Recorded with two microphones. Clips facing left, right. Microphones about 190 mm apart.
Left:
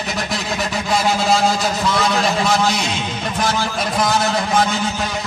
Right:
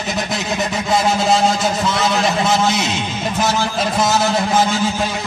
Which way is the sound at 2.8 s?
25° right (ahead or behind).